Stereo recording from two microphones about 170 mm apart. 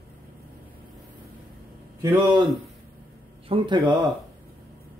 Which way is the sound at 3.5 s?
30° right (ahead or behind).